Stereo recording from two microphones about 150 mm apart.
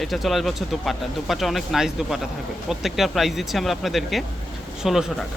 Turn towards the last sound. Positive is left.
turn(degrees=0)  # may be behind; listen again after turning